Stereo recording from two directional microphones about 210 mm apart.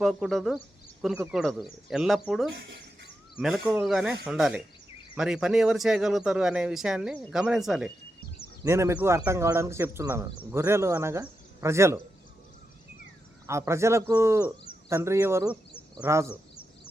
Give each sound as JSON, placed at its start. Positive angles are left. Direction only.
{"t": 0.0, "sound": "speech", "side_deg": 0}
{"t": 2.5, "sound": "speech", "side_deg": -60}
{"t": 3.4, "sound": "speech", "side_deg": -5}
{"t": 8.6, "sound": "speech", "side_deg": -15}
{"t": 13.5, "sound": "speech", "side_deg": -15}